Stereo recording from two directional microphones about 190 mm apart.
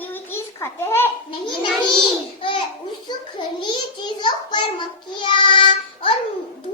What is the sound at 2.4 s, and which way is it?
A child's voice, 25° left (ahead or behind).